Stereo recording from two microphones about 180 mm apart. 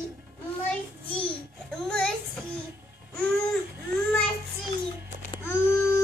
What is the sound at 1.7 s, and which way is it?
Child singing, 5° left (ahead or behind).